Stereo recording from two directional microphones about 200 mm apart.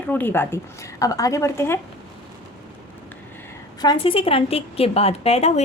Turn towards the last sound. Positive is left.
turn(degrees=30)  # may be behind; listen again after turning